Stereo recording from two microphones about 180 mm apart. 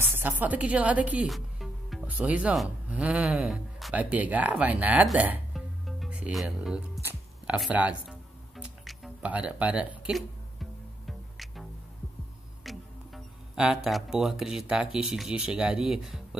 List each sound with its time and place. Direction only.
0.0 s music: 10° right (ahead or behind)
12.6 s speech: centre (ahead or behind)